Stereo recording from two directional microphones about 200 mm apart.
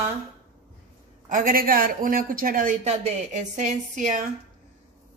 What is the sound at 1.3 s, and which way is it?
A man's voice, 45° right (ahead or behind).